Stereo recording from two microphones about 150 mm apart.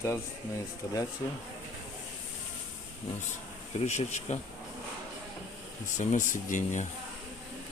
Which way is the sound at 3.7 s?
50° left (ahead or behind).